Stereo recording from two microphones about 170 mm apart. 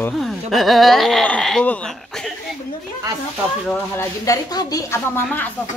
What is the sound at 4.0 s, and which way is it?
Speech, 20° left (ahead or behind).